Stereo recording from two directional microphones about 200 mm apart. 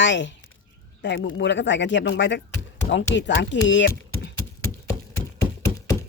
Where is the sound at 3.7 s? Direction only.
65° left (ahead or behind).